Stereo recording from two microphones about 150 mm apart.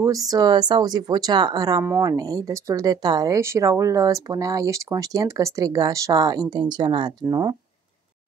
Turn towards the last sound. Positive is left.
turn(degrees=-20)  # may be behind; listen again after turning